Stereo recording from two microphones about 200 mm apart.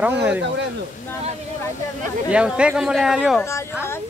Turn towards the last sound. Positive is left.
turn(degrees=0)  # may be behind; listen again after turning